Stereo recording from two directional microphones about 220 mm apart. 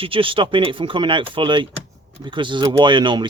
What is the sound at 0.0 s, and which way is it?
Speech, 25° right (ahead or behind).